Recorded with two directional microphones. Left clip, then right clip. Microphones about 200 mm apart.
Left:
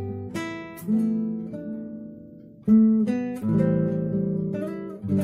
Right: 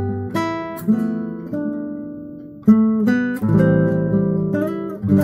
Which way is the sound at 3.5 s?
35° right (ahead or behind).